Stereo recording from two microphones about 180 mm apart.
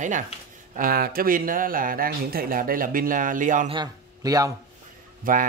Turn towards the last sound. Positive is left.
turn(degrees=-50)  # may be behind; listen again after turning